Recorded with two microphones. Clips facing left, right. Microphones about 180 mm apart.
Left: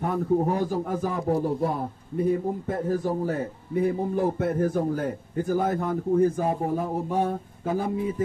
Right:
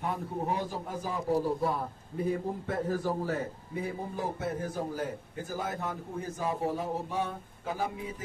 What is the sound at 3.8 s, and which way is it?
A man's voice, 55° left (ahead or behind).